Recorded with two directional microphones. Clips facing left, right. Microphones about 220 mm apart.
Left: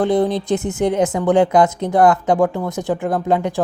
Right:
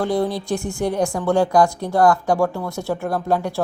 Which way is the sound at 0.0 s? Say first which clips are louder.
Left 4 dB; 20° left (ahead or behind).